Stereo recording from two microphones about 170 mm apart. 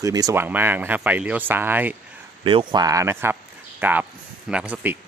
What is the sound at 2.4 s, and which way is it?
Speech, 30° right (ahead or behind).